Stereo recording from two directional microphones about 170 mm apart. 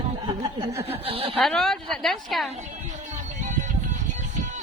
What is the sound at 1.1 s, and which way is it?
Speech, 35° right (ahead or behind).